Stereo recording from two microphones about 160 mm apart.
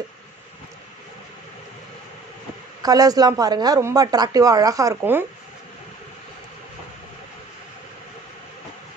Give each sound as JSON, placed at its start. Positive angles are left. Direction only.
{"t": 2.8, "sound": "a woman's voice", "side_deg": -25}